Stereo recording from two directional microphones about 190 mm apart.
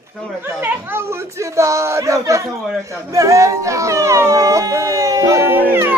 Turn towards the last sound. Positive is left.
turn(degrees=-10)  # may be behind; listen again after turning